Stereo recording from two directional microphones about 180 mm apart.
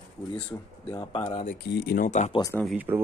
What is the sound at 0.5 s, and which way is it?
Speech, 10° left (ahead or behind).